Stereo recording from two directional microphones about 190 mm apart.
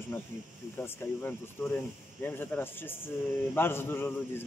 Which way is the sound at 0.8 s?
10° left (ahead or behind).